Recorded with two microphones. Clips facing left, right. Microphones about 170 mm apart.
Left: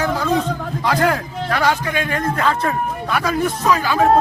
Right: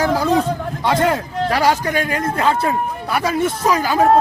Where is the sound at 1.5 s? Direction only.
35° right (ahead or behind).